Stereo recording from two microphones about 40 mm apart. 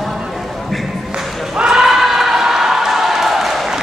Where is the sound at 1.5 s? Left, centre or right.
Right.